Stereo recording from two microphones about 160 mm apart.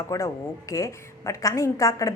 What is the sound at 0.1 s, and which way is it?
A woman's voice, 20° left (ahead or behind).